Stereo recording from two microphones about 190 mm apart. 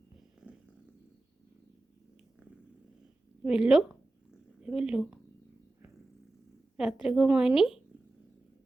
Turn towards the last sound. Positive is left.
turn(degrees=-5)  # may be behind; listen again after turning